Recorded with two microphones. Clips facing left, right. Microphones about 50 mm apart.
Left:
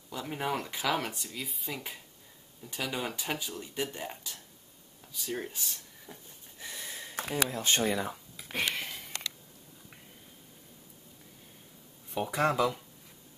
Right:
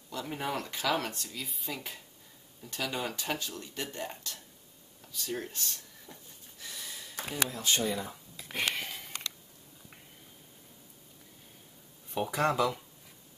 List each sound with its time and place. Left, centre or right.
0.1 s speech: centre
6.6 s a sound: left
7.4 s speech: left
8.6 s sniff: centre
12.1 s speech: centre